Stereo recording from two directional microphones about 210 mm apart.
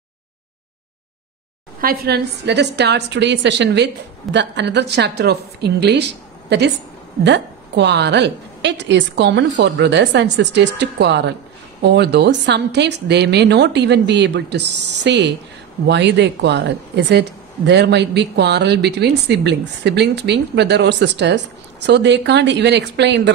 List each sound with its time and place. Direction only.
1.8 s a woman's voice: 45° right (ahead or behind)
7.2 s speech: 55° right (ahead or behind)